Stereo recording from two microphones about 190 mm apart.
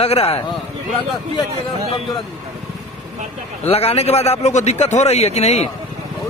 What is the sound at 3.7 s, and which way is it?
A man's voice, 30° left (ahead or behind).